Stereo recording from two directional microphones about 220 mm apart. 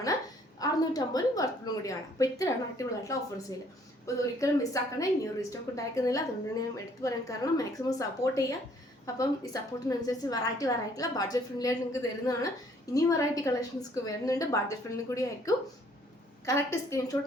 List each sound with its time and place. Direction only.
0.6 s a woman's voice: 15° left (ahead or behind)